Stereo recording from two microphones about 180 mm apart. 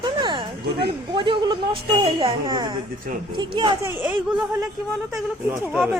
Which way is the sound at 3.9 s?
10° right (ahead or behind).